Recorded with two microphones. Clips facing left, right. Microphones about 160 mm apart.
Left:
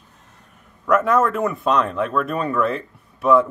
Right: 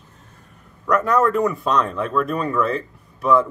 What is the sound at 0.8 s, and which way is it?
Speech, centre (ahead or behind).